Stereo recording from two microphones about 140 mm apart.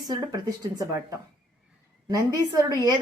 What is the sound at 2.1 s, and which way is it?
Speech, 25° right (ahead or behind).